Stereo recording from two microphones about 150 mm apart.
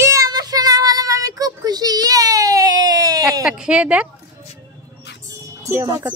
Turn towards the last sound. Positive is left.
turn(degrees=-20)  # may be behind; listen again after turning